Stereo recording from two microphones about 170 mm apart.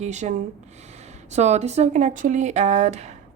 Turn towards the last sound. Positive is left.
turn(degrees=-40)  # may be behind; listen again after turning